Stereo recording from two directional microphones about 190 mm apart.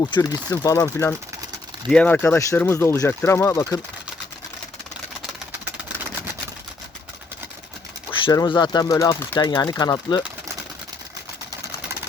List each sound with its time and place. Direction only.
0.0 s speech: 20° left (ahead or behind)
8.1 s a sound: 25° left (ahead or behind)
8.4 s speech: 20° left (ahead or behind)